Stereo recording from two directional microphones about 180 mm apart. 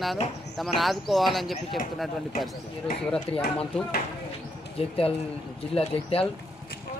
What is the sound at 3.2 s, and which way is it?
Speech, 30° left (ahead or behind).